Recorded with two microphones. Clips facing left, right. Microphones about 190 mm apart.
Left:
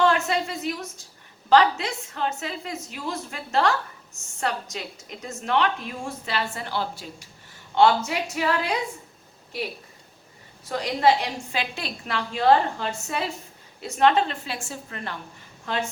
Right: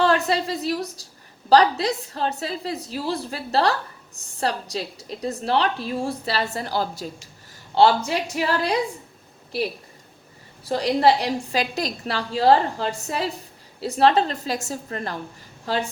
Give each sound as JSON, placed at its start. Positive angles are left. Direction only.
{"t": 0.0, "sound": "a woman's voice", "side_deg": -35}
{"t": 10.6, "sound": "a woman's voice", "side_deg": -35}